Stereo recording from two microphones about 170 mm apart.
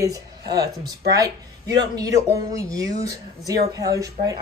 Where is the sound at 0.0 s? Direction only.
20° right (ahead or behind).